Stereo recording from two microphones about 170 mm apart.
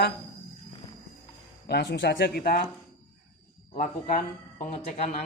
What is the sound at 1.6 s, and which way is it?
Speech, 70° left (ahead or behind).